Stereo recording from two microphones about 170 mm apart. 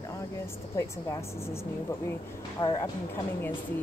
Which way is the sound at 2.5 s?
25° left (ahead or behind).